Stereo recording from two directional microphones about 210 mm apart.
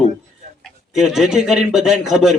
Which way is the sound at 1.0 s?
Centre (ahead or behind).